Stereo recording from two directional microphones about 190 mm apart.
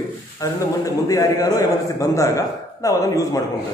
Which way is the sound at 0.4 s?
15° left (ahead or behind).